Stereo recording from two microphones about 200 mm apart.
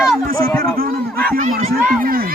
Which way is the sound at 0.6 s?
45° right (ahead or behind).